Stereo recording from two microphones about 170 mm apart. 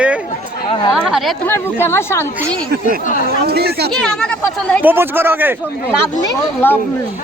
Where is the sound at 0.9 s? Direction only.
Centre (ahead or behind).